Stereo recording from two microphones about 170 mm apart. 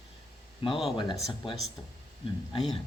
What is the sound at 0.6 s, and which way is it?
Speech, 30° left (ahead or behind).